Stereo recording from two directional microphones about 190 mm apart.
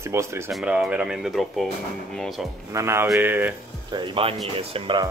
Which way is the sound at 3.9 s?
25° right (ahead or behind).